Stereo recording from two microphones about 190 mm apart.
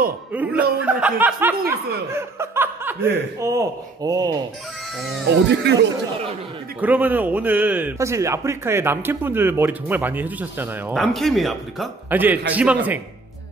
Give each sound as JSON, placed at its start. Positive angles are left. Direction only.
{"t": 0.7, "sound": "a man's voice", "side_deg": -5}
{"t": 5.0, "sound": "speech", "side_deg": 0}
{"t": 5.5, "sound": "speech", "side_deg": -65}
{"t": 6.8, "sound": "a man's voice", "side_deg": -10}